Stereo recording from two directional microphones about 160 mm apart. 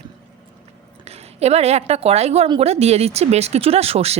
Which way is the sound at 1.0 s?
40° right (ahead or behind).